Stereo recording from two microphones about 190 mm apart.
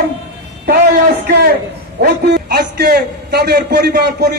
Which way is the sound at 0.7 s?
60° right (ahead or behind).